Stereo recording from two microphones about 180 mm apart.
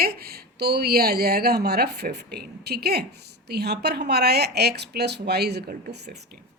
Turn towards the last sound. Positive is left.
turn(degrees=-65)  # may be behind; listen again after turning